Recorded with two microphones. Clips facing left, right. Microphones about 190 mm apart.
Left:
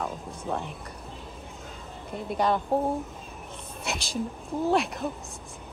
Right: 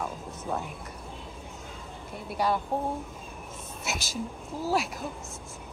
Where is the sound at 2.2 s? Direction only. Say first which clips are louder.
Left 2 dB; 5° right (ahead or behind).